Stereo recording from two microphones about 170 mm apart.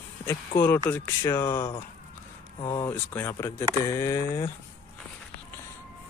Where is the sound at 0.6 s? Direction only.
10° left (ahead or behind).